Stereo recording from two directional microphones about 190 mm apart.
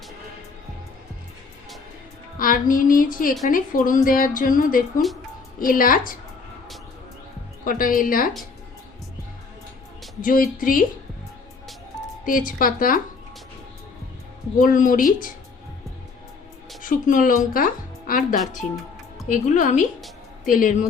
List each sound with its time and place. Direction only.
2.4 s a woman's voice: 45° left (ahead or behind)
7.6 s a woman's voice: 45° left (ahead or behind)
10.2 s a woman's voice: 45° left (ahead or behind)
12.2 s a woman's voice: 45° left (ahead or behind)
14.6 s a woman's voice: 45° left (ahead or behind)
16.8 s a woman's voice: 45° left (ahead or behind)